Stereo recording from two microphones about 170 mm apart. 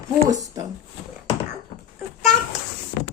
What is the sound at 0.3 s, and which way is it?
Speech, 20° right (ahead or behind).